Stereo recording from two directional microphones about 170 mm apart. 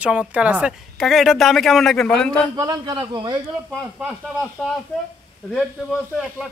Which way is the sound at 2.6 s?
20° right (ahead or behind).